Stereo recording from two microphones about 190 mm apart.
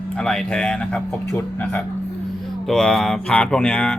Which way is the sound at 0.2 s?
5° left (ahead or behind).